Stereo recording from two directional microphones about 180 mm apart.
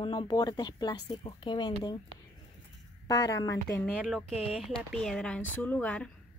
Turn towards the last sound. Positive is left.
turn(degrees=5)  # may be behind; listen again after turning